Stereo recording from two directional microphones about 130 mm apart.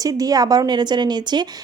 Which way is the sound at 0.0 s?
30° right (ahead or behind).